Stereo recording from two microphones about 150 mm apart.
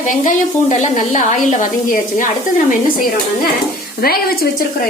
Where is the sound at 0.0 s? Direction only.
60° left (ahead or behind).